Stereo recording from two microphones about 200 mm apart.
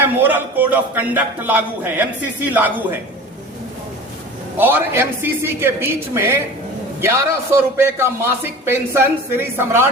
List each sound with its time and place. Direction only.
0.0 s a man's voice: 10° right (ahead or behind)
4.5 s a man's voice: 10° right (ahead or behind)